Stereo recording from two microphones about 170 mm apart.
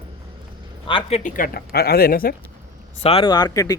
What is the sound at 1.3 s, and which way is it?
Speech, 55° left (ahead or behind).